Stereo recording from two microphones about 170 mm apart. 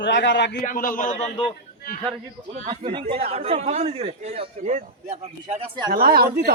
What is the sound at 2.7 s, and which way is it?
Speech, 30° right (ahead or behind).